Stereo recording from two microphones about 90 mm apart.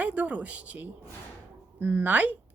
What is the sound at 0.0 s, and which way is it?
A woman's voice, 15° right (ahead or behind).